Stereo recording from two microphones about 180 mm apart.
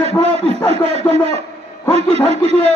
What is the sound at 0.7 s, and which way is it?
Speech, 35° right (ahead or behind).